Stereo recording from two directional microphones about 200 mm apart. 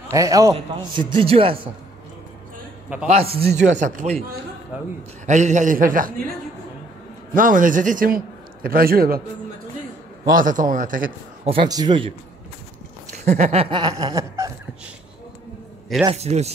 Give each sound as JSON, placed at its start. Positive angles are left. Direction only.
{"t": 0.1, "sound": "a man's voice", "side_deg": -15}
{"t": 2.9, "sound": "a man's voice", "side_deg": -10}
{"t": 3.3, "sound": "a man's voice", "side_deg": -55}
{"t": 3.7, "sound": "a man's voice", "side_deg": -40}
{"t": 4.7, "sound": "a man's voice", "side_deg": -5}
{"t": 5.2, "sound": "a man's voice", "side_deg": -35}
{"t": 7.3, "sound": "a man's voice", "side_deg": -40}
{"t": 10.3, "sound": "a man's voice", "side_deg": -40}
{"t": 11.4, "sound": "a man's voice", "side_deg": -25}
{"t": 13.1, "sound": "speech", "side_deg": -35}
{"t": 16.1, "sound": "a man's voice", "side_deg": -35}